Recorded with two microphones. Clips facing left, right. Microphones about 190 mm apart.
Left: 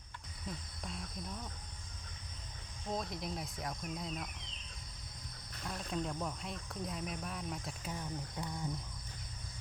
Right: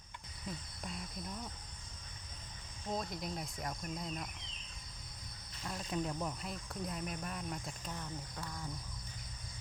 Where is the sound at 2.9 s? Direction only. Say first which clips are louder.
Even; centre (ahead or behind).